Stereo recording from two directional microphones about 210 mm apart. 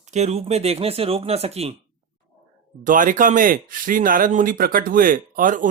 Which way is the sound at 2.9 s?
40° right (ahead or behind).